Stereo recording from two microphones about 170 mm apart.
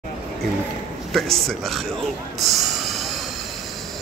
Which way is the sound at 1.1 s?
Centre (ahead or behind).